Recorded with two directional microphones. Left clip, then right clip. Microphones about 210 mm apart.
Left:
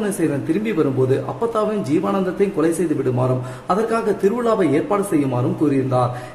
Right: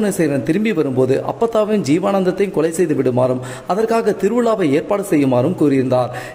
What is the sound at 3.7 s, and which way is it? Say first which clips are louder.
Speech: right 3 dB; 40° right (ahead or behind).